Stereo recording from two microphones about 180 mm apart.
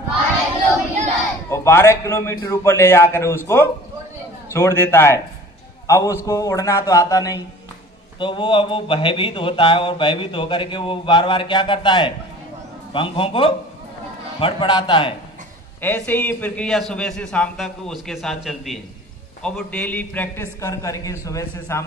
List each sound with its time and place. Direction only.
1.5 s a man's voice: 15° left (ahead or behind)
15.8 s a man's voice: 10° left (ahead or behind)